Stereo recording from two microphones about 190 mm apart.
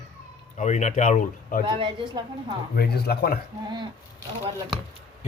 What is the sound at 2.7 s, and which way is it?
Speech, 55° left (ahead or behind).